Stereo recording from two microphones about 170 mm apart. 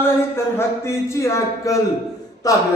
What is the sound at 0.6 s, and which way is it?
Speech, 15° left (ahead or behind).